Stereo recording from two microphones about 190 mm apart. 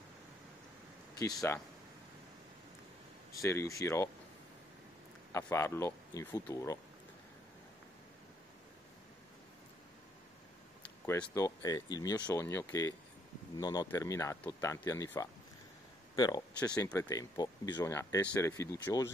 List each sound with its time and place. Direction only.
1.1 s speech: 15° left (ahead or behind)
3.3 s speech: 15° left (ahead or behind)
5.3 s speech: 15° left (ahead or behind)
11.1 s speech: 15° left (ahead or behind)
16.5 s speech: 5° left (ahead or behind)
16.9 s speech: 20° left (ahead or behind)